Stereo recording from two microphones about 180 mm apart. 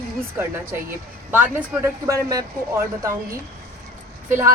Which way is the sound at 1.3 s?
10° right (ahead or behind).